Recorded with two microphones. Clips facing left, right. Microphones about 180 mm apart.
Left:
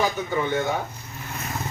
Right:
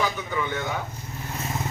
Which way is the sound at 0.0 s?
45° left (ahead or behind).